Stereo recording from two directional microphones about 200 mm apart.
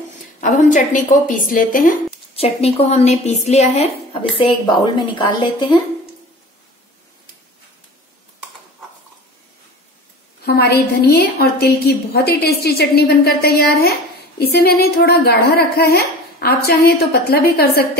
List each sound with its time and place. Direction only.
0.4 s a woman's voice: 40° left (ahead or behind)
2.3 s a woman's voice: 30° left (ahead or behind)
10.4 s a woman's voice: 50° left (ahead or behind)